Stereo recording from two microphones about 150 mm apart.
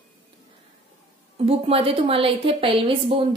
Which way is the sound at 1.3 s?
40° right (ahead or behind).